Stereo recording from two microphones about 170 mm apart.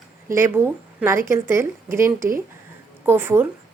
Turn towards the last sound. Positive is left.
turn(degrees=-10)  # may be behind; listen again after turning